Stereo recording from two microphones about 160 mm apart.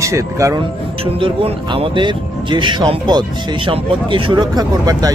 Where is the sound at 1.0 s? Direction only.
35° right (ahead or behind).